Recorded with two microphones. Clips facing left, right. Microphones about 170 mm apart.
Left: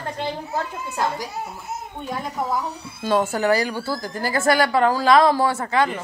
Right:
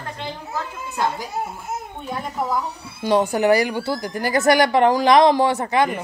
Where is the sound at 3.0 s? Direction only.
15° right (ahead or behind).